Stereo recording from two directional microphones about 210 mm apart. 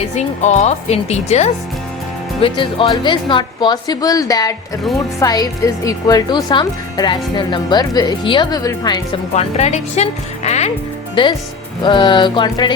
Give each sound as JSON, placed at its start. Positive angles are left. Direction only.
{"t": 0.2, "sound": "speech", "side_deg": 30}
{"t": 9.3, "sound": "speech", "side_deg": 30}